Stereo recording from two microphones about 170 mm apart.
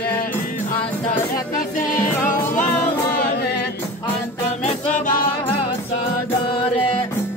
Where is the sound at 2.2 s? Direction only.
50° left (ahead or behind).